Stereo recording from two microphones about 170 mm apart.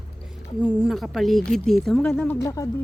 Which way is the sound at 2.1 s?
15° left (ahead or behind).